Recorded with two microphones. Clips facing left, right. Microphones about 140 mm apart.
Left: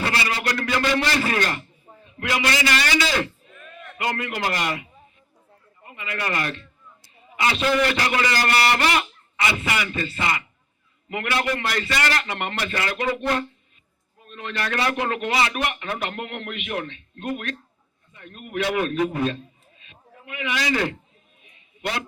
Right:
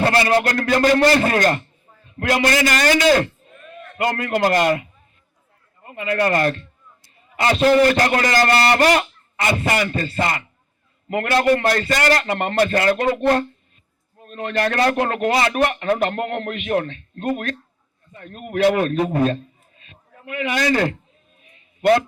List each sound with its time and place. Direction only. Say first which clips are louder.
0.0 s a man's voice: right 9 dB; 50° right (ahead or behind)
5.9 s a man's voice: right 9 dB; 40° right (ahead or behind)